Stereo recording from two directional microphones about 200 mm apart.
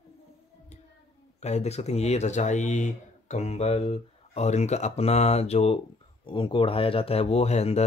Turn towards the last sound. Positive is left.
turn(degrees=30)  # may be behind; listen again after turning